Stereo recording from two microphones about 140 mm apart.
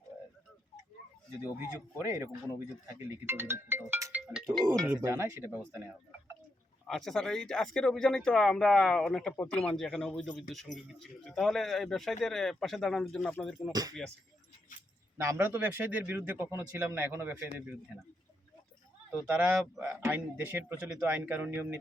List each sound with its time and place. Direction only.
2.0 s speech: 20° right (ahead or behind)
4.5 s speech: 5° left (ahead or behind)
4.9 s speech: 20° right (ahead or behind)
6.8 s speech: 5° left (ahead or behind)
15.2 s speech: 15° right (ahead or behind)
19.3 s speech: 10° right (ahead or behind)